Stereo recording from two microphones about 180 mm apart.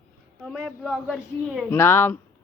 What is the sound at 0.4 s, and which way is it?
A woman's voice, centre (ahead or behind).